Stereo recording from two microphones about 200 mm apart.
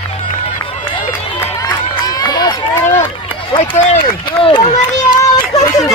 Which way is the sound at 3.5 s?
35° left (ahead or behind).